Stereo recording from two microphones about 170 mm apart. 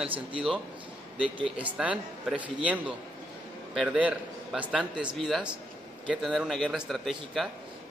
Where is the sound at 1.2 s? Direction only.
30° right (ahead or behind).